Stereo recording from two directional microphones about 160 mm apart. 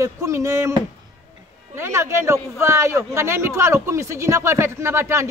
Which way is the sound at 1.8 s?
15° right (ahead or behind).